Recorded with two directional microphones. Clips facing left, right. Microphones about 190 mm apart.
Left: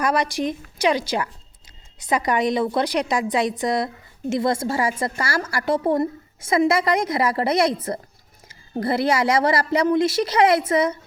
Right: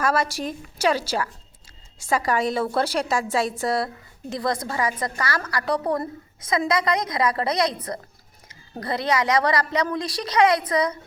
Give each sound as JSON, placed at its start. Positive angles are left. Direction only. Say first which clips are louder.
{"t": 0.0, "sound": "a woman's voice", "louder": "left 2 dB", "side_deg": 15}